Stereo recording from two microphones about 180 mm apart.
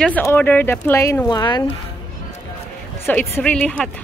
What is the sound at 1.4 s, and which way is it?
Speech, 25° left (ahead or behind).